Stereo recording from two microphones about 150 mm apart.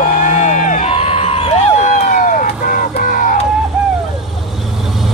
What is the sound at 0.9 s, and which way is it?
Vehicle, 40° left (ahead or behind).